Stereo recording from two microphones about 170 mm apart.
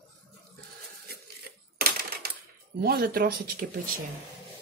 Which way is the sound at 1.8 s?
65° right (ahead or behind).